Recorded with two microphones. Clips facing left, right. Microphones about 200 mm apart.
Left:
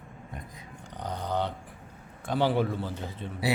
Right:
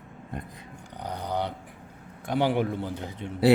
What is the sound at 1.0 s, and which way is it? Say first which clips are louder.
A man's voice: even; 10° right (ahead or behind).